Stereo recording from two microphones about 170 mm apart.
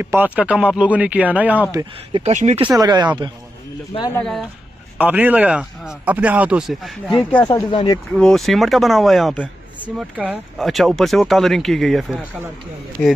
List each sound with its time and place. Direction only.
0.0 s speech: 10° right (ahead or behind)
2.1 s speech: 40° right (ahead or behind)
2.6 s speech: 25° right (ahead or behind)
4.1 s speech: 5° left (ahead or behind)
4.9 s speech: 10° right (ahead or behind)
7.4 s speech: 25° left (ahead or behind)
8.1 s a man's voice: 5° left (ahead or behind)